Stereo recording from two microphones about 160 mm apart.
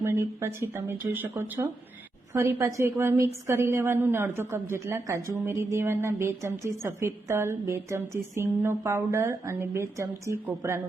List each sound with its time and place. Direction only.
0.0 s a woman's voice: 15° right (ahead or behind)